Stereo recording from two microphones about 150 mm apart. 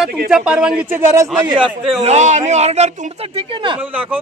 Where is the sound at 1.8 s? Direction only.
45° right (ahead or behind).